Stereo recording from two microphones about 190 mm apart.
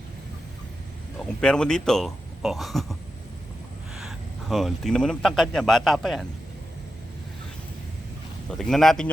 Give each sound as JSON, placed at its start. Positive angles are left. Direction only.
{"t": 1.4, "sound": "speech", "side_deg": 5}
{"t": 8.4, "sound": "speech", "side_deg": 5}